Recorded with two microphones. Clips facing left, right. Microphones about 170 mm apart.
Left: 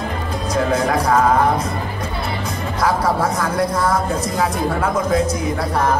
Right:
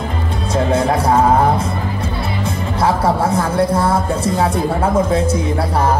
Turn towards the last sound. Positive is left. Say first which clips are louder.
# right 3 dB
turn(degrees=-30)  # may be behind; listen again after turning